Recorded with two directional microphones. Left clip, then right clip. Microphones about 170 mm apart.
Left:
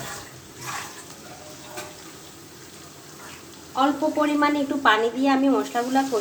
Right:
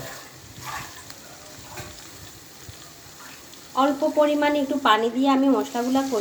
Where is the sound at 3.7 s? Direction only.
35° right (ahead or behind).